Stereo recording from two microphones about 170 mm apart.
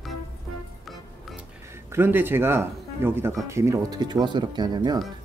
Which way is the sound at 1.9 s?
10° right (ahead or behind).